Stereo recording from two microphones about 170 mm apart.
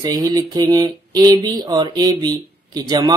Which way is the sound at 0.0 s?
25° right (ahead or behind).